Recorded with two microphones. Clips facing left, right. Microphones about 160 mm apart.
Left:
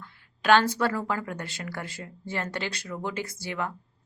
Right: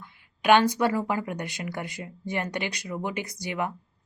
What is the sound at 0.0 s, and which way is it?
A woman's voice, 15° right (ahead or behind).